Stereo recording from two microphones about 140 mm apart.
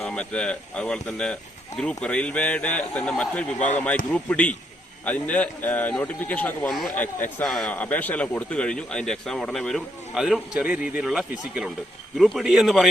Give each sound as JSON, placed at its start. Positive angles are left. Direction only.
{"t": 0.0, "sound": "a man's voice", "side_deg": 5}